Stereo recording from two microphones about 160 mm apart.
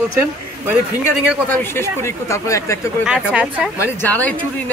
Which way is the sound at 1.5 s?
15° left (ahead or behind).